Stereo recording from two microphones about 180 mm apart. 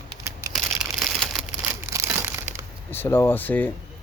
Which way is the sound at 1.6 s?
15° right (ahead or behind).